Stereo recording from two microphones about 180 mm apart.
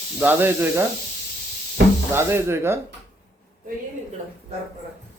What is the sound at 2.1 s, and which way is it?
Speech, 15° right (ahead or behind).